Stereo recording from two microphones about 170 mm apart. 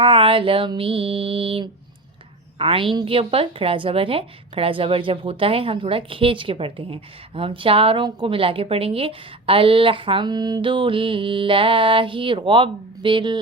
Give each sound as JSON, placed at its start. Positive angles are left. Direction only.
{"t": 0.0, "sound": "a woman's voice", "side_deg": -30}